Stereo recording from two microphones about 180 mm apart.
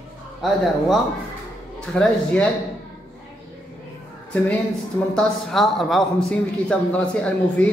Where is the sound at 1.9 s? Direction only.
5° left (ahead or behind).